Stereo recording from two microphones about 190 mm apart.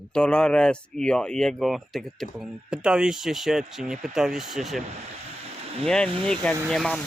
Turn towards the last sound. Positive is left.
turn(degrees=0)  # may be behind; listen again after turning